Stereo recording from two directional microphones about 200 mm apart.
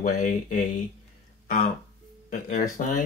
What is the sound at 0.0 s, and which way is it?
Speech, 40° left (ahead or behind).